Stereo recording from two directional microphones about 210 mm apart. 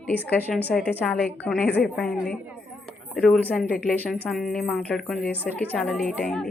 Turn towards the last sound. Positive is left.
turn(degrees=5)  # may be behind; listen again after turning